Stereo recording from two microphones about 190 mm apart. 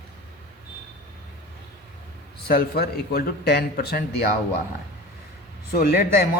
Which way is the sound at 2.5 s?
55° left (ahead or behind).